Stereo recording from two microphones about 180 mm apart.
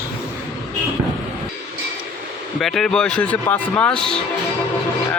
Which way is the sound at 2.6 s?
Centre (ahead or behind).